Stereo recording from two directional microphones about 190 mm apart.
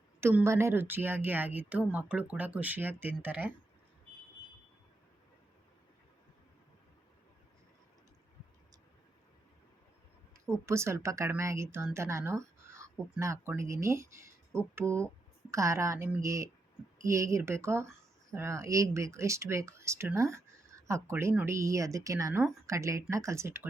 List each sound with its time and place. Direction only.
0.2 s speech: 15° right (ahead or behind)
10.7 s speech: 15° right (ahead or behind)